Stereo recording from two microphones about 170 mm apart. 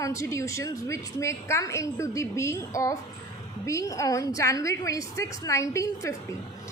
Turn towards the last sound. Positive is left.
turn(degrees=20)  # may be behind; listen again after turning